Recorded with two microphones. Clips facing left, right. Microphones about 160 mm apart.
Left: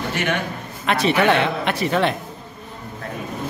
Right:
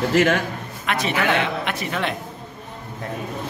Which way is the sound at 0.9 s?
30° left (ahead or behind).